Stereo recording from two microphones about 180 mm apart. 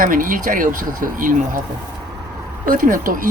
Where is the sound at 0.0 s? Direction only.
50° right (ahead or behind).